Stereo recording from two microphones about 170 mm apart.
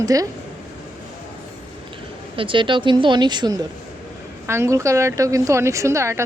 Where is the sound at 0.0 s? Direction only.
20° right (ahead or behind).